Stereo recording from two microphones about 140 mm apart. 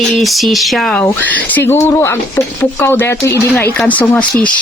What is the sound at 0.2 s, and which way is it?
Speech, centre (ahead or behind).